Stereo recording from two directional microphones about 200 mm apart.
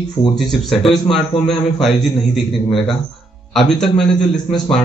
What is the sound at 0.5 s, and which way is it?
Speech, centre (ahead or behind).